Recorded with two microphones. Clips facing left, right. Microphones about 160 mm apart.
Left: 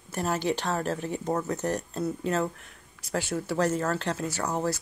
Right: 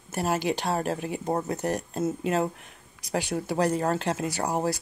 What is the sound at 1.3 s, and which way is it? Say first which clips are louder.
Speech: right 1 dB; 35° right (ahead or behind).